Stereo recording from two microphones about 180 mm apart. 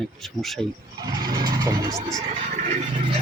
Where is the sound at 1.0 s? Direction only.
20° right (ahead or behind).